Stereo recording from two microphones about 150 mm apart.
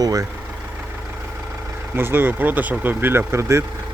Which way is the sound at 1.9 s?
15° right (ahead or behind).